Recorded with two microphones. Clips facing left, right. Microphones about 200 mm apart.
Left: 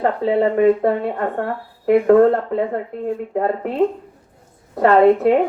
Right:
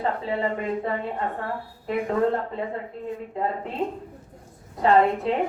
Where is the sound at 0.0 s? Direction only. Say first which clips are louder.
Left 9 dB; 65° left (ahead or behind).